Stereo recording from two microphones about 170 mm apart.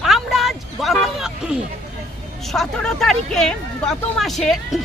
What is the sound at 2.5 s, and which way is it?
Speech, centre (ahead or behind).